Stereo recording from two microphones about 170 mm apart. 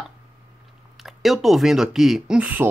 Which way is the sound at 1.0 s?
Centre (ahead or behind).